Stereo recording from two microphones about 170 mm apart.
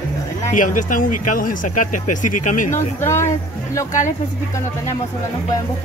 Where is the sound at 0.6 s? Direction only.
50° left (ahead or behind).